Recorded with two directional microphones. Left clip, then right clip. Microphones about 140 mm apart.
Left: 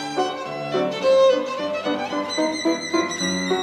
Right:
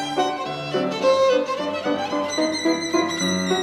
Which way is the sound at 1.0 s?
50° right (ahead or behind).